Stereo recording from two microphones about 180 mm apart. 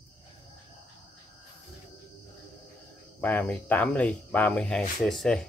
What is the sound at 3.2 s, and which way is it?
Speech, 10° left (ahead or behind).